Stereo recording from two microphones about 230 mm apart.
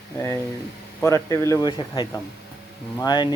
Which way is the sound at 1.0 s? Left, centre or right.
Centre.